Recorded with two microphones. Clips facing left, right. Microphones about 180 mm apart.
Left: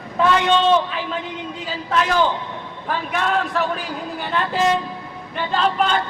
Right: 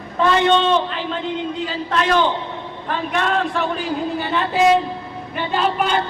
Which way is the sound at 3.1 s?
5° left (ahead or behind).